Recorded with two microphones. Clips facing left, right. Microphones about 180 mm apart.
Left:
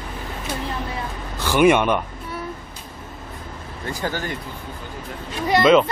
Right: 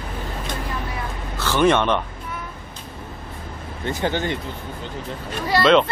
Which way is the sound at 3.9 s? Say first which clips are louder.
Right 4 dB; 20° right (ahead or behind).